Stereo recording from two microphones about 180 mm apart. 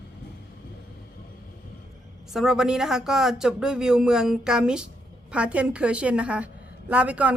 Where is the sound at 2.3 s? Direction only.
Centre (ahead or behind).